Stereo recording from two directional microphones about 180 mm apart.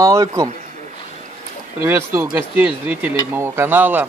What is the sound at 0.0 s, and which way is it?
Speech, 20° right (ahead or behind).